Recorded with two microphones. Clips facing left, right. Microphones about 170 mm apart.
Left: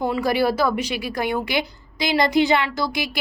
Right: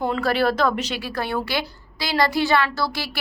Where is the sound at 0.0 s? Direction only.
10° left (ahead or behind).